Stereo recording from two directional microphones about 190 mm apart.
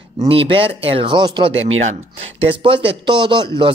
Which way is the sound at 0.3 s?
30° right (ahead or behind).